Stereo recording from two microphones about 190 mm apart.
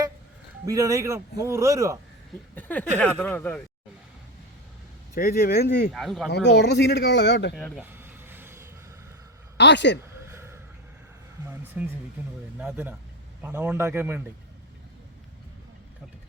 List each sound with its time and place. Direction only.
0.6 s speech: 15° right (ahead or behind)
2.6 s speech: 10° left (ahead or behind)
5.1 s speech: 50° left (ahead or behind)
5.9 s speech: centre (ahead or behind)
6.3 s speech: 65° left (ahead or behind)
7.8 s vehicle: 10° right (ahead or behind)
9.6 s speech: 65° left (ahead or behind)
10.3 s a sound: 15° right (ahead or behind)
11.8 s speech: 10° right (ahead or behind)